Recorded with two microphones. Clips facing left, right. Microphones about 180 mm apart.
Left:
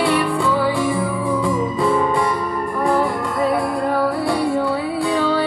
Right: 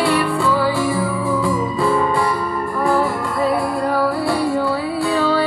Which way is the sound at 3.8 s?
20° left (ahead or behind).